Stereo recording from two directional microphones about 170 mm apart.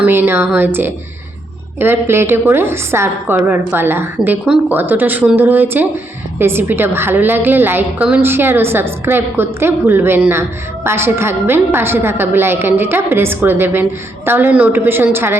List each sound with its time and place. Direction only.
0.0 s a woman's voice: 10° right (ahead or behind)